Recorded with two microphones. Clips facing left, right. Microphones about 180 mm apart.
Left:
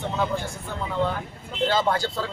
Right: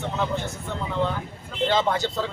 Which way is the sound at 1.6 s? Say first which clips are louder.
Even; 5° left (ahead or behind).